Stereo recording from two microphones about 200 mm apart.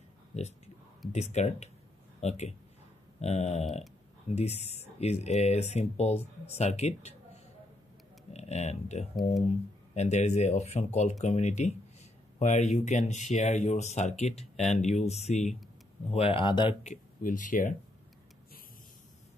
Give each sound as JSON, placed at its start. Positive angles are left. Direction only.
{"t": 0.3, "sound": "speech", "side_deg": 35}
{"t": 8.3, "sound": "speech", "side_deg": 35}
{"t": 16.8, "sound": "speech", "side_deg": 40}